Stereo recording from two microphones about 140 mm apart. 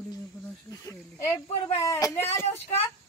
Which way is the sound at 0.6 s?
25° left (ahead or behind).